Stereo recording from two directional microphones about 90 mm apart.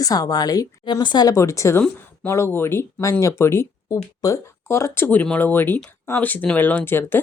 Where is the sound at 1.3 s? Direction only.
35° left (ahead or behind).